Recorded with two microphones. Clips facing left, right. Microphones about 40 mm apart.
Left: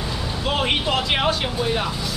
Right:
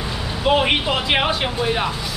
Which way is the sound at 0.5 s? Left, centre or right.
Centre.